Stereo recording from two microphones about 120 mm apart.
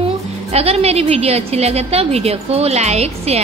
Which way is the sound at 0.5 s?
60° right (ahead or behind).